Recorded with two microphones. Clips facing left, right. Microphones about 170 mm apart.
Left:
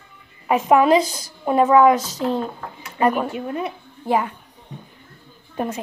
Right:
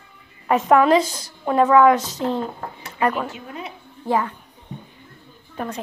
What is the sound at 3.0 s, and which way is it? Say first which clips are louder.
Speech: left 3 dB; 15° left (ahead or behind).